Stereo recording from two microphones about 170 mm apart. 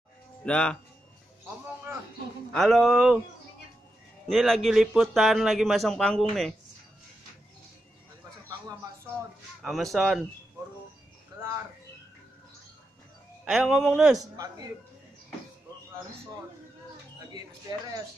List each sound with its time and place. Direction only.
0.5 s speech: 10° left (ahead or behind)
2.5 s speech: centre (ahead or behind)
4.3 s speech: centre (ahead or behind)
9.6 s speech: centre (ahead or behind)
13.5 s speech: centre (ahead or behind)
14.1 s a man's voice: 20° right (ahead or behind)
17.3 s speech: 25° right (ahead or behind)